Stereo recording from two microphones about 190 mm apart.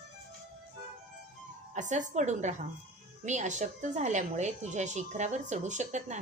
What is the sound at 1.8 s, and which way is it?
A woman's voice, 40° right (ahead or behind).